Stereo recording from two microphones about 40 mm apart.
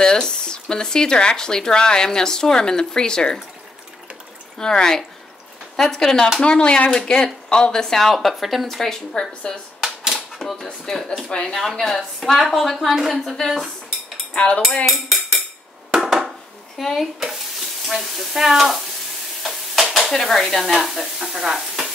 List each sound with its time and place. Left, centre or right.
0.0 s speech: centre
4.6 s speech: centre
6.4 s speech: left
8.1 s a woman's voice: centre
9.1 s speech: centre
9.8 s typewriter: centre
10.5 s speech: centre
11.7 s a woman's voice: centre
14.3 s cutlery: left
14.9 s dishes: centre
16.7 s a woman's voice: centre
19.4 s stir: centre
20.7 s stir: centre